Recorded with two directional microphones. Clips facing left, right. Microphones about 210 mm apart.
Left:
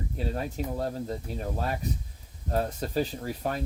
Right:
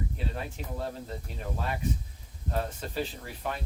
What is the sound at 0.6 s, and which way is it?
Speech, 40° left (ahead or behind).